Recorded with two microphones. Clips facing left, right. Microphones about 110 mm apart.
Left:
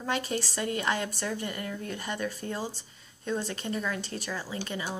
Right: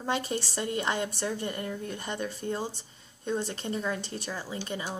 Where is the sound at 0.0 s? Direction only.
25° right (ahead or behind).